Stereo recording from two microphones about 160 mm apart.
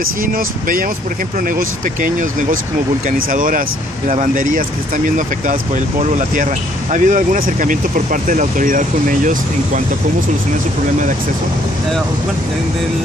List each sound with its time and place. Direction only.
0.0 s speech: 60° right (ahead or behind)